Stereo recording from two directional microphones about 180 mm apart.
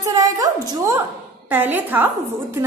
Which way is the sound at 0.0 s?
20° right (ahead or behind).